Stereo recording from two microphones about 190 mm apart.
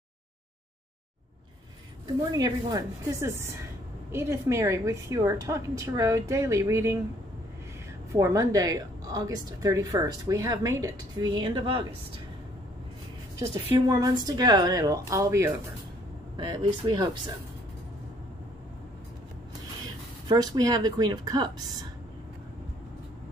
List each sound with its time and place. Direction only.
2.3 s a woman's voice: 20° right (ahead or behind)
8.1 s a woman's voice: 15° right (ahead or behind)
13.4 s a woman's voice: 20° right (ahead or behind)
20.2 s a woman's voice: 20° right (ahead or behind)